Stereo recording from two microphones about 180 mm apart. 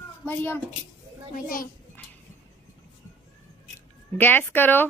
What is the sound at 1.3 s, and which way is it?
Speech, 50° left (ahead or behind).